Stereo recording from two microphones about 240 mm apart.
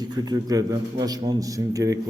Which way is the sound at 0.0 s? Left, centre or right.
Centre.